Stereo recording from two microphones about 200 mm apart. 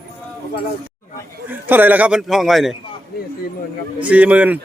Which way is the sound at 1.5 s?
10° right (ahead or behind).